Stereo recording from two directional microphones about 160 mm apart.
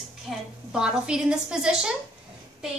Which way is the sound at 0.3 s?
5° right (ahead or behind).